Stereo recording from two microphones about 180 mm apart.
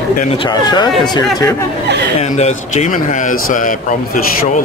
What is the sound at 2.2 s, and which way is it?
A man's voice, 40° left (ahead or behind).